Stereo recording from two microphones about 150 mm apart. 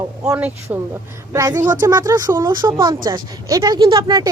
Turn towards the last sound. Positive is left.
turn(degrees=-25)  # may be behind; listen again after turning